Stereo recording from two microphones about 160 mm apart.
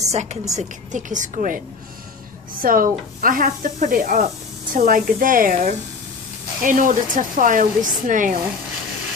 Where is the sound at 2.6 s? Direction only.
60° right (ahead or behind).